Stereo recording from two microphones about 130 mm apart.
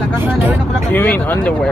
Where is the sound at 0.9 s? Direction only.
15° left (ahead or behind).